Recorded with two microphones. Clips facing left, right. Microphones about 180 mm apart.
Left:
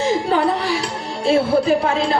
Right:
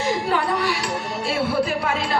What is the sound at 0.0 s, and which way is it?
Music, 25° left (ahead or behind).